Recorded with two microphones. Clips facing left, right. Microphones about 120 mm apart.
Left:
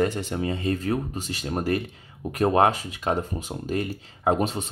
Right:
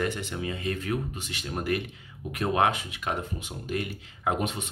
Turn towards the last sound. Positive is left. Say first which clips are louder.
# left 5 dB
turn(degrees=35)  # may be behind; listen again after turning